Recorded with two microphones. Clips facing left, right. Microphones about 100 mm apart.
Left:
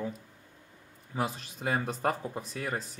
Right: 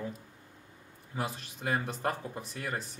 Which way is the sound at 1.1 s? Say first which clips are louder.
Left 3 dB; 20° left (ahead or behind).